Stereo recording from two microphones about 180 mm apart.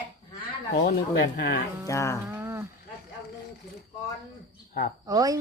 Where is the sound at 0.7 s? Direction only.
60° left (ahead or behind).